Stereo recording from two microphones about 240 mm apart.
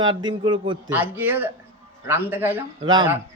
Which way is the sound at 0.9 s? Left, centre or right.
Centre.